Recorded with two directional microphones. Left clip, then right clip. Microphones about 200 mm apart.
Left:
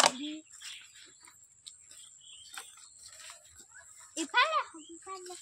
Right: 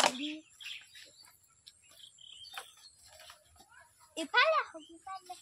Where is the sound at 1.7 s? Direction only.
55° left (ahead or behind).